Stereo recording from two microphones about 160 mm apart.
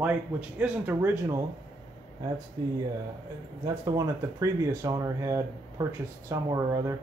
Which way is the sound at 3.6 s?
25° right (ahead or behind).